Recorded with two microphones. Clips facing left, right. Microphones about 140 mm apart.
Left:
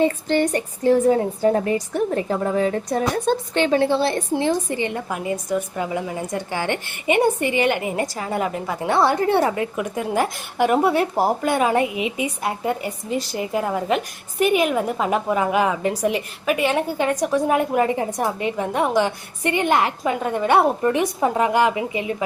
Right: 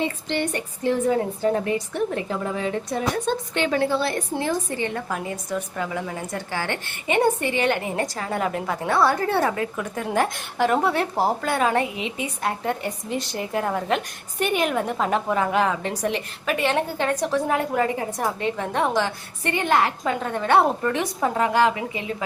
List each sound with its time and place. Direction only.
0.0 s a woman's voice: 45° left (ahead or behind); by 8.9 s 5° left (ahead or behind)
8.9 s a woman's voice: 20° left (ahead or behind)
9.7 s a woman's voice: 10° left (ahead or behind)